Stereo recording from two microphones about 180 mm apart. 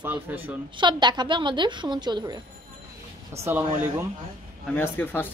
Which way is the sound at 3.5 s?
10° right (ahead or behind).